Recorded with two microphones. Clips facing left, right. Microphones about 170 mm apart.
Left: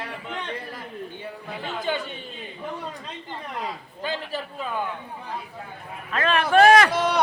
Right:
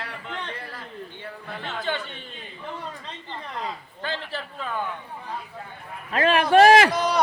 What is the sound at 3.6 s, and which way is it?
Speech, 10° left (ahead or behind).